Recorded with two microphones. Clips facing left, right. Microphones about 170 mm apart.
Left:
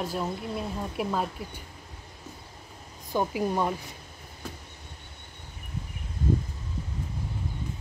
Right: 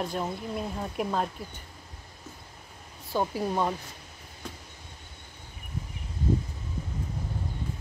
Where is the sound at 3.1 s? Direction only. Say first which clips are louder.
Left 1 dB; 15° left (ahead or behind).